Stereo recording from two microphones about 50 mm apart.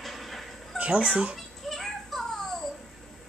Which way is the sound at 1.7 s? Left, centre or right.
Centre.